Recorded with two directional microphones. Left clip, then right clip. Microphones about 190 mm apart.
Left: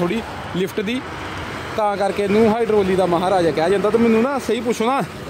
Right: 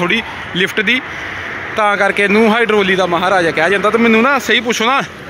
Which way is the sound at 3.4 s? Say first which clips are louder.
Right 4 dB; 5° left (ahead or behind).